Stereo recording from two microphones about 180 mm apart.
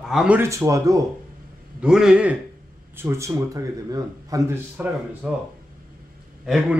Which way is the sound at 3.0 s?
15° right (ahead or behind).